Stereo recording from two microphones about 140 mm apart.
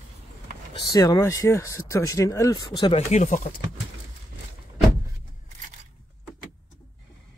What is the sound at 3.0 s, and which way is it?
Speech, 55° left (ahead or behind).